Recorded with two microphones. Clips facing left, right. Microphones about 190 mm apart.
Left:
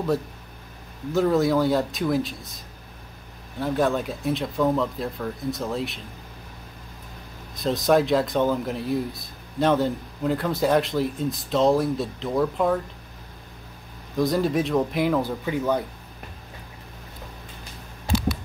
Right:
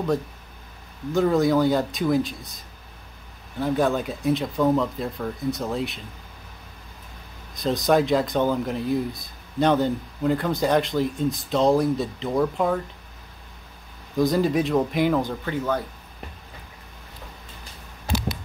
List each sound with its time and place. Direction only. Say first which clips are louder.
1.1 s speech: right 1 dB; centre (ahead or behind)
7.5 s speech: even; centre (ahead or behind)
14.1 s speech: right 1 dB; centre (ahead or behind); by 15.8 s 15° left (ahead or behind)